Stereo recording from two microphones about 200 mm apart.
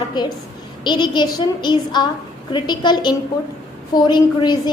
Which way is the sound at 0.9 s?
20° left (ahead or behind).